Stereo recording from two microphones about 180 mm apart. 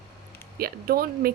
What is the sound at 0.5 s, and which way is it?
Speech, 55° right (ahead or behind).